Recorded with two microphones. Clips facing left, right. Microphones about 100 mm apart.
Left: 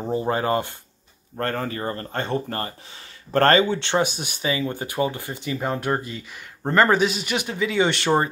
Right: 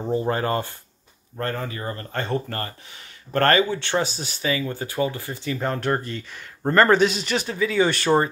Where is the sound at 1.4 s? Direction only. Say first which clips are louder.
Left 2 dB; 40° left (ahead or behind).